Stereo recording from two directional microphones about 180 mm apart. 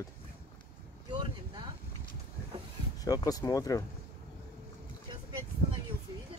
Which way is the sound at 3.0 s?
20° left (ahead or behind).